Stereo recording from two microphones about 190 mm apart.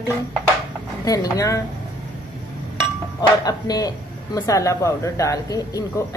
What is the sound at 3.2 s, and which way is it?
Speech, 20° left (ahead or behind).